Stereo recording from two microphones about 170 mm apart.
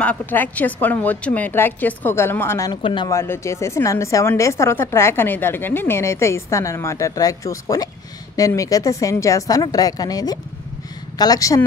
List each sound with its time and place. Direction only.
0.0 s a woman's voice: 10° left (ahead or behind)
2.7 s a woman's voice: 30° left (ahead or behind)
3.1 s a woman's voice: 15° left (ahead or behind)